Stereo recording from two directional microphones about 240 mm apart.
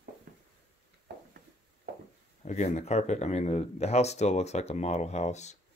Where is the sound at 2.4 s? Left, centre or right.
Left.